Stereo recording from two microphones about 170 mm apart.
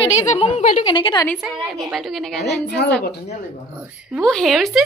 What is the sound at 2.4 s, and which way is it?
Speech, 80° left.